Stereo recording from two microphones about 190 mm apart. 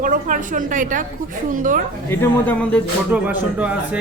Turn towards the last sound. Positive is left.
turn(degrees=-5)  # may be behind; listen again after turning